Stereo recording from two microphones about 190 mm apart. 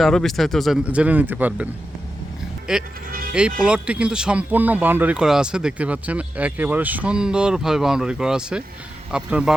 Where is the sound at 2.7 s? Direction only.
5° right (ahead or behind).